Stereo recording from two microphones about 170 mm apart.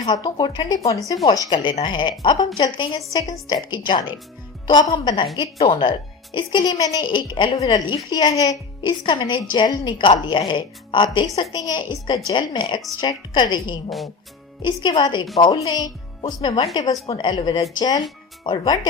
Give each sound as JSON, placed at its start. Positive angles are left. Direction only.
{"t": 0.0, "sound": "a woman's voice", "side_deg": 25}
{"t": 16.4, "sound": "a woman's voice", "side_deg": 35}